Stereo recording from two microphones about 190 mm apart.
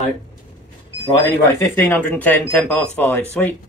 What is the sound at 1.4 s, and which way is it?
Speech, 10° left (ahead or behind).